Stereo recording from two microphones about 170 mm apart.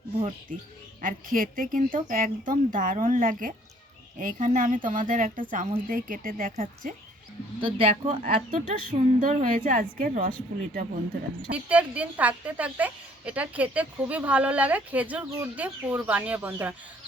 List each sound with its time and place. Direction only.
1.0 s speech: 55° right (ahead or behind)
7.6 s speech: 35° right (ahead or behind)
8.4 s speech: 50° right (ahead or behind)
11.5 s a woman's voice: 10° right (ahead or behind)